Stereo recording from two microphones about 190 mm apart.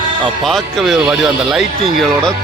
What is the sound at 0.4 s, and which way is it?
Speech, centre (ahead or behind).